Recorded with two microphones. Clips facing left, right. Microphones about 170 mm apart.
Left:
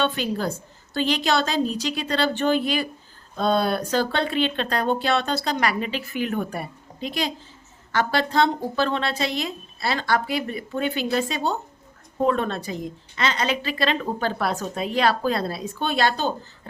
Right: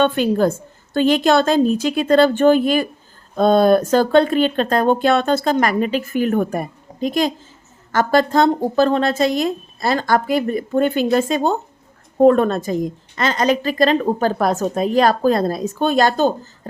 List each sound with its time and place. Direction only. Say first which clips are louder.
0.0 s a woman's voice: right 9 dB; 50° right (ahead or behind)